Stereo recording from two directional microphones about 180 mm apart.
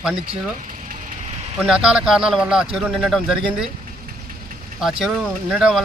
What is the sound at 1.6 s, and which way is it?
Speech, 5° right (ahead or behind).